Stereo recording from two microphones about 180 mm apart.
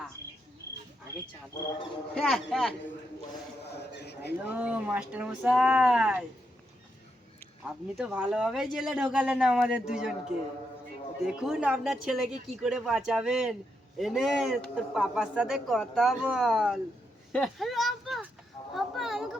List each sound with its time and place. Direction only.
2.1 s speech: centre (ahead or behind)
3.8 s a sound: 65° left (ahead or behind)
4.4 s speech: 10° right (ahead or behind)
7.9 s speech: 5° right (ahead or behind)
11.2 s speech: 5° right (ahead or behind)
17.3 s a sound: centre (ahead or behind)